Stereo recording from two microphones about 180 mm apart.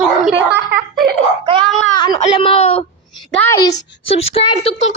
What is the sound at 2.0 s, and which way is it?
A child's voice, 30° left (ahead or behind).